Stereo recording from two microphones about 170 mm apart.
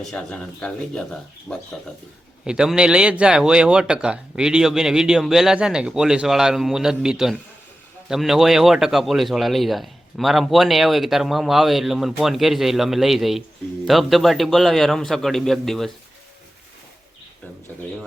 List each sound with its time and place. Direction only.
0.0 s speech: 5° left (ahead or behind)